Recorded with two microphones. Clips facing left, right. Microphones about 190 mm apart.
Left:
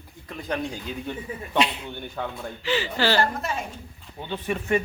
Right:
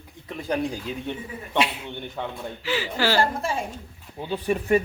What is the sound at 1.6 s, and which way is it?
Speech, 5° right (ahead or behind).